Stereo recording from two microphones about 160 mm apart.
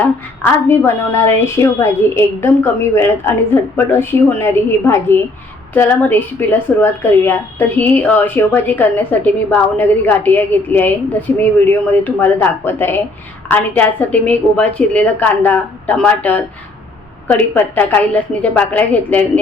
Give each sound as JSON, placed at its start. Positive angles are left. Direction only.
{"t": 0.7, "sound": "a woman's voice", "side_deg": 15}